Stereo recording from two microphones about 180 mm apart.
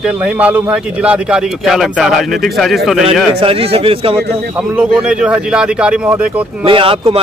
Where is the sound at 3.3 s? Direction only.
30° right (ahead or behind).